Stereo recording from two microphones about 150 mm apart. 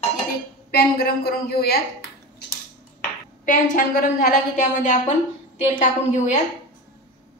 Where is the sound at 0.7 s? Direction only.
90° left.